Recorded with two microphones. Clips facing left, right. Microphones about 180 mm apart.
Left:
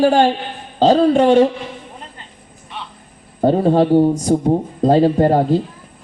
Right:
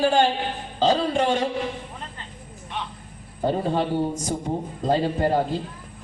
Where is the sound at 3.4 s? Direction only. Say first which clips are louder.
Left 10 dB; 50° left (ahead or behind).